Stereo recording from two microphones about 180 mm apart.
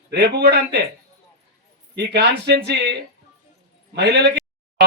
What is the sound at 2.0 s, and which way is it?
Speech, 70° right (ahead or behind).